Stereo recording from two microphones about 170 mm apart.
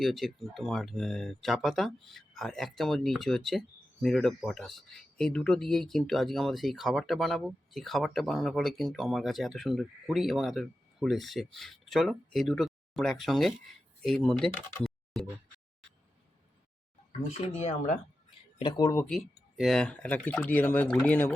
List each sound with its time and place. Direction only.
0.0 s speech: centre (ahead or behind)
17.2 s speech: 40° left (ahead or behind)
18.6 s speech: 25° left (ahead or behind)
19.0 s speech: centre (ahead or behind)